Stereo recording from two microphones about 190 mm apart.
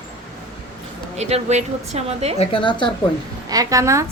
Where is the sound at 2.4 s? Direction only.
25° left (ahead or behind).